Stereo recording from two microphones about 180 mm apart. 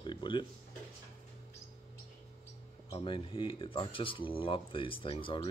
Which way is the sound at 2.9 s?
30° left (ahead or behind).